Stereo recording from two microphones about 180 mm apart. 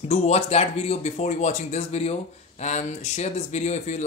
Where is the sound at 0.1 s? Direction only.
35° left (ahead or behind).